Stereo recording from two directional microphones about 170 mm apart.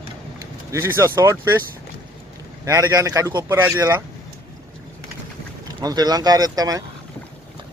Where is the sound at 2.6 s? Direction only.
20° right (ahead or behind).